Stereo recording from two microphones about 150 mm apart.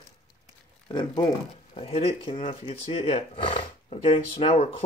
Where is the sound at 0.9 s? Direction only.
30° left (ahead or behind).